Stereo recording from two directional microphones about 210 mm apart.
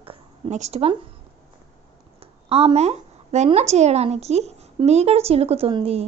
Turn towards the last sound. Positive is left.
turn(degrees=-25)  # may be behind; listen again after turning